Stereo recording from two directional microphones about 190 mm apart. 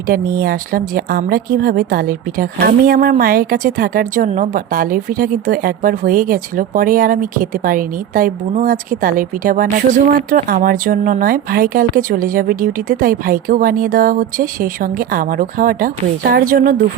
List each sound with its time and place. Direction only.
0.1 s a woman's voice: 50° right (ahead or behind)